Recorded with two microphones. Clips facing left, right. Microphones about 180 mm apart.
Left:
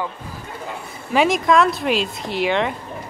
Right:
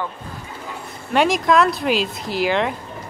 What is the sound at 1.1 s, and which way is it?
Speech, centre (ahead or behind).